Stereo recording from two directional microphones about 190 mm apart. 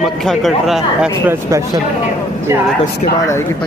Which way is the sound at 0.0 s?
Centre (ahead or behind).